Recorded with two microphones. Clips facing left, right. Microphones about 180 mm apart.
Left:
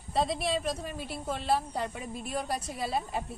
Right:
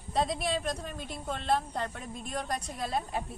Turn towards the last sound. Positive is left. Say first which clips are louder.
# left 1 dB
turn(degrees=5)  # may be behind; listen again after turning